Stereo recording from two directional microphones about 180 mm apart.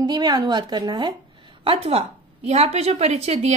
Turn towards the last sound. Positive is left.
turn(degrees=-35)  # may be behind; listen again after turning